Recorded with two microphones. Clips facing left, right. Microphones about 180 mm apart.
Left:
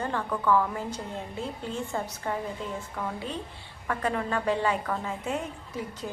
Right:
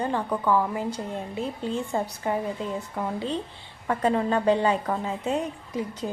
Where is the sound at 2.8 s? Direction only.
30° right (ahead or behind).